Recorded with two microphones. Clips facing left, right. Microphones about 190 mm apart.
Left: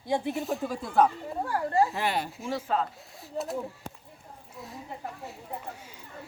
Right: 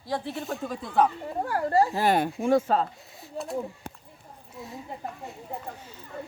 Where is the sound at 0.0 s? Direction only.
15° left (ahead or behind).